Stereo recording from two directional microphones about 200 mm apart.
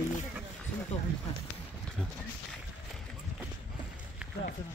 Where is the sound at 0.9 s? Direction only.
35° left (ahead or behind).